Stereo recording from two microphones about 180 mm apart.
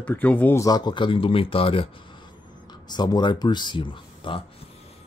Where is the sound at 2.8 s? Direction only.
25° left (ahead or behind).